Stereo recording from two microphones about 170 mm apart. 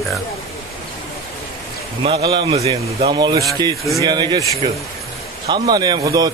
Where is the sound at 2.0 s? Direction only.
30° right (ahead or behind).